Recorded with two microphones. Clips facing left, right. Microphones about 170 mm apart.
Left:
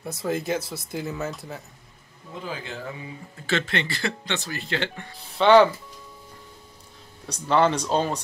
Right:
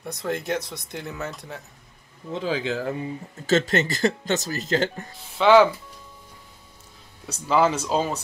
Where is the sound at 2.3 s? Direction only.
90° right.